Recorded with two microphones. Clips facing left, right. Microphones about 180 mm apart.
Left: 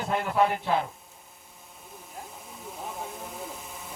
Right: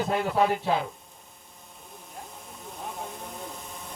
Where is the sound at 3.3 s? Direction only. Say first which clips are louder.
Even; 5° left (ahead or behind).